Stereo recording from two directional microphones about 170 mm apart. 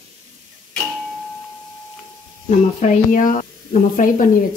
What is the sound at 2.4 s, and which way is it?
Speech, 45° left (ahead or behind).